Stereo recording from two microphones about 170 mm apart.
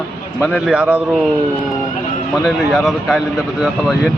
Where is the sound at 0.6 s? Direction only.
5° right (ahead or behind).